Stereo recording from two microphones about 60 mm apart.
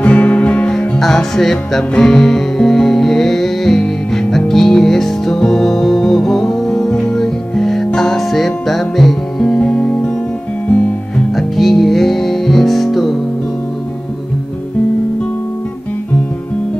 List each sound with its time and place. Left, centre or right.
0.0 s music: left
0.7 s music: centre
11.3 s music: centre